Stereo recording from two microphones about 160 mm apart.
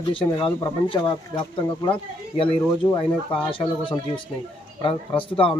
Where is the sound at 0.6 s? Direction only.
25° left (ahead or behind).